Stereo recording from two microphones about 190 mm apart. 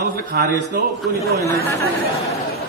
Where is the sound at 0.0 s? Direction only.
60° right (ahead or behind).